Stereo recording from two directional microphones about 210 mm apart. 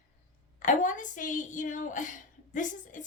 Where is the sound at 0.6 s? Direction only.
35° left (ahead or behind).